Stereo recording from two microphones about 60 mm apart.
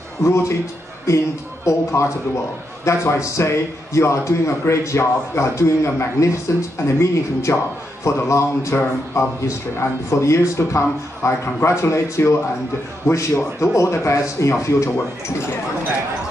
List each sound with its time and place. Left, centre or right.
0.2 s a man's voice: left